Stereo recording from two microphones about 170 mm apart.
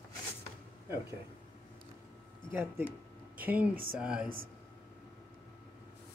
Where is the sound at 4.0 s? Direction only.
5° right (ahead or behind).